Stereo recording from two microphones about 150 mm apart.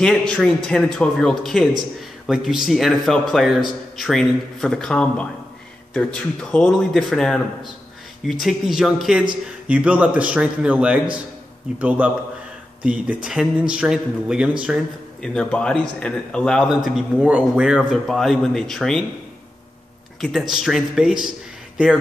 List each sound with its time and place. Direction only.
0.0 s a man's voice: 5° left (ahead or behind)
15.2 s a man's voice: 5° left (ahead or behind)
20.2 s a man's voice: centre (ahead or behind)